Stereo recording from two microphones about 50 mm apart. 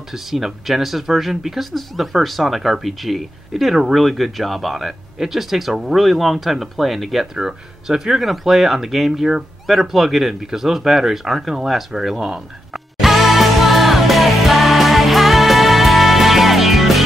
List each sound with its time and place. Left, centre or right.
0.1 s speech: centre
12.7 s music: centre